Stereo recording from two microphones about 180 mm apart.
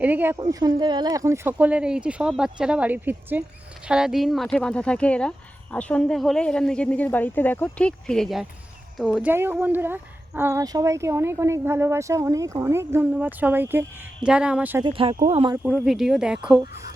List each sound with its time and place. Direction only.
0.0 s speech: 10° right (ahead or behind)
0.6 s speech: 25° right (ahead or behind)
14.8 s speech: 30° right (ahead or behind)
15.5 s speech: 10° right (ahead or behind)
16.4 s speech: 25° right (ahead or behind)